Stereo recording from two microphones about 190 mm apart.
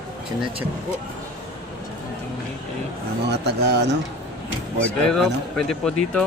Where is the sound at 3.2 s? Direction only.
60° right (ahead or behind).